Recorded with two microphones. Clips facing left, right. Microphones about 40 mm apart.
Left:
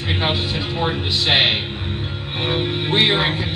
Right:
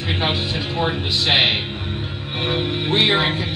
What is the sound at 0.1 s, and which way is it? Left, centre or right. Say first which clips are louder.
Speech: left 1 dB; centre.